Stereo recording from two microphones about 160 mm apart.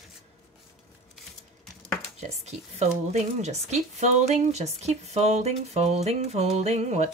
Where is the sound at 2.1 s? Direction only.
45° right (ahead or behind).